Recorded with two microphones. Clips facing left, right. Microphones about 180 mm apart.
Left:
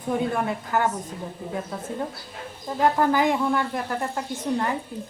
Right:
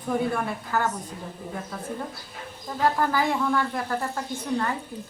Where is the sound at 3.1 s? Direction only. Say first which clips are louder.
Left 2 dB; 20° left (ahead or behind).